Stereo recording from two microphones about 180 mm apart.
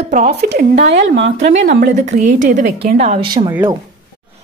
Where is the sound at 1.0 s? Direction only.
90° right; by 1.9 s 65° right (ahead or behind).